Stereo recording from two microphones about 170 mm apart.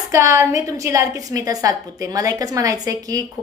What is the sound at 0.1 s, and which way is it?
A woman's voice, 15° right (ahead or behind).